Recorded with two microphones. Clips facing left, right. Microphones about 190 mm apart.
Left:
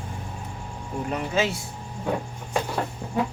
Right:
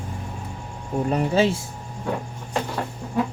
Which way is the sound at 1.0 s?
35° right (ahead or behind).